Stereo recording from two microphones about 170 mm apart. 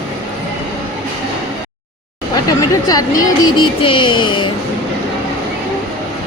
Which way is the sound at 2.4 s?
20° left (ahead or behind).